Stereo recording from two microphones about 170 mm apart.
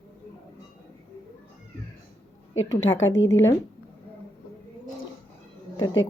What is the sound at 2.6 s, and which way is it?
Speech, 90° left.